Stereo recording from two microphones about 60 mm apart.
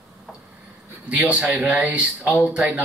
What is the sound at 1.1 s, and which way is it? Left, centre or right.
Speech, right.